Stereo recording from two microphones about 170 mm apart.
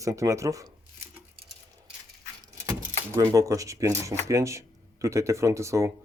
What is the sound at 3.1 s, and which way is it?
Speech, 20° right (ahead or behind).